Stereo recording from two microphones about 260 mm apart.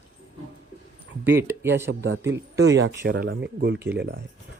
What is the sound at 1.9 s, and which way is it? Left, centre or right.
A man's voice, right.